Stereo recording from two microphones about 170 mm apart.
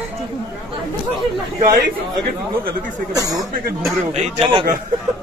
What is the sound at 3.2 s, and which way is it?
Speech, 20° right (ahead or behind).